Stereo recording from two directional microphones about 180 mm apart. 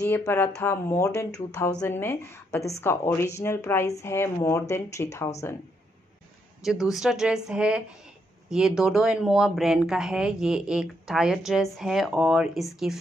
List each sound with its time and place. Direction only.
0.0 s speech: 15° left (ahead or behind)
6.6 s speech: centre (ahead or behind)